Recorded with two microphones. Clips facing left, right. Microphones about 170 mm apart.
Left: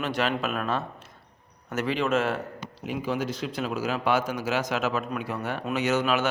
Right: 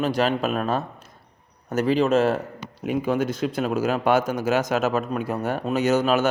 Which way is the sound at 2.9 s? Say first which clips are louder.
Right 6 dB; 55° right (ahead or behind).